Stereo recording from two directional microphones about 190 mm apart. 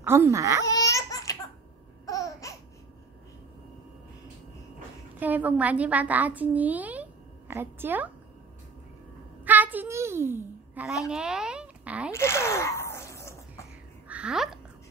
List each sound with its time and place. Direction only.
0.0 s speech: 15° right (ahead or behind)
0.7 s laughter: 15° left (ahead or behind)
5.2 s a woman's voice: 10° right (ahead or behind)
9.4 s a sound: 10° right (ahead or behind)
12.1 s zipper: 15° left (ahead or behind)
14.0 s a sound: 5° right (ahead or behind)